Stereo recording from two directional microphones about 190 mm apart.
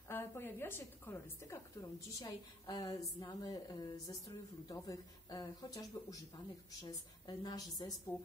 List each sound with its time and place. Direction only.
0.1 s a woman's voice: 10° left (ahead or behind)